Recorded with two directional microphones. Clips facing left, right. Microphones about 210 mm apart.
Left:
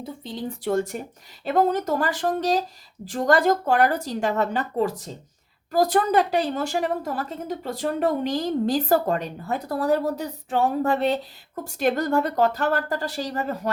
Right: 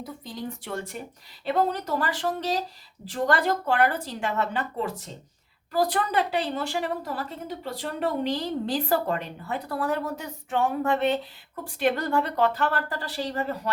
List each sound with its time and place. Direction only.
0.0 s a woman's voice: 30° left (ahead or behind); by 13.4 s 45° left (ahead or behind)